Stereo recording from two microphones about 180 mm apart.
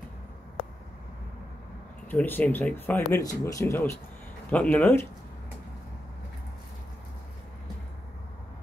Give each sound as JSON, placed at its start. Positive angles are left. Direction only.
{"t": 2.0, "sound": "speech", "side_deg": 10}